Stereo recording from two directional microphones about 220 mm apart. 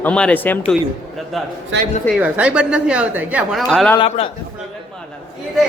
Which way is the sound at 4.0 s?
25° left (ahead or behind).